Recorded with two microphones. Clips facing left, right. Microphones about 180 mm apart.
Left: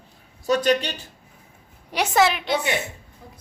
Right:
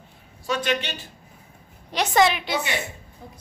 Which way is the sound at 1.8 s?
10° left (ahead or behind).